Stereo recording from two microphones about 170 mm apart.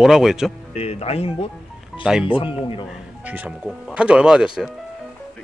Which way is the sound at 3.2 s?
10° right (ahead or behind).